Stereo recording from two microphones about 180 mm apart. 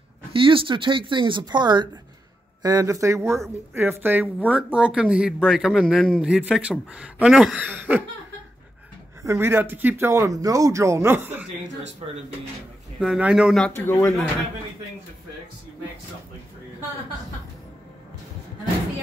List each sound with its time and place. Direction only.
0.3 s a man's voice: 30° right (ahead or behind); by 8.0 s 10° right (ahead or behind)
9.2 s speech: 15° right (ahead or behind)
13.0 s a man's voice: 5° right (ahead or behind); by 14.1 s 10° left (ahead or behind)